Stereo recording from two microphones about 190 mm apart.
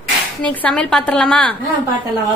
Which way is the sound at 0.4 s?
5° left (ahead or behind).